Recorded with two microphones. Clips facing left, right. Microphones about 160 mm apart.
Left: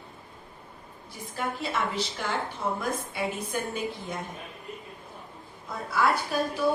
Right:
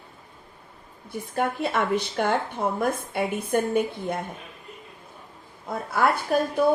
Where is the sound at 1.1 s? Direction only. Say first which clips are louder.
Right 7 dB; 55° right (ahead or behind).